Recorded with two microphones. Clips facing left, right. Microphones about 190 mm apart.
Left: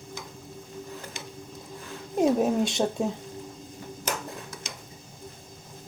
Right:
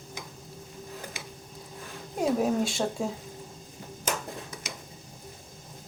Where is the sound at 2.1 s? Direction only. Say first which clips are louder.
Left 3 dB; 20° left (ahead or behind).